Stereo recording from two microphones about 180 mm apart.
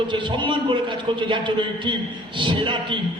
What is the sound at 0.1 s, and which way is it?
A man's voice, 25° right (ahead or behind).